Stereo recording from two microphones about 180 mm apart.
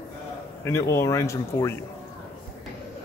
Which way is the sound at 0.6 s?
15° left (ahead or behind).